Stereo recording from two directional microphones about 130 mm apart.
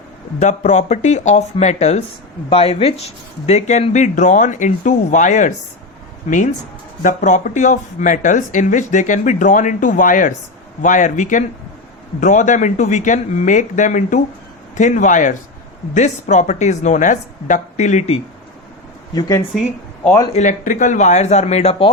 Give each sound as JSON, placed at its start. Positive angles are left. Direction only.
{"t": 0.3, "sound": "speech", "side_deg": 60}
{"t": 7.0, "sound": "speech", "side_deg": 75}
{"t": 16.0, "sound": "speech", "side_deg": 65}
{"t": 19.5, "sound": "speech", "side_deg": 0}
{"t": 20.3, "sound": "speech", "side_deg": 70}